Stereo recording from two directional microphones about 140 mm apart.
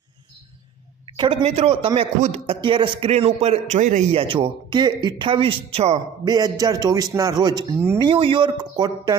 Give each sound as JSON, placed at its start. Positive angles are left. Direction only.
{"t": 1.0, "sound": "a sound", "side_deg": -35}
{"t": 1.5, "sound": "speech", "side_deg": -45}
{"t": 4.2, "sound": "speech", "side_deg": -35}
{"t": 6.2, "sound": "a man's voice", "side_deg": -30}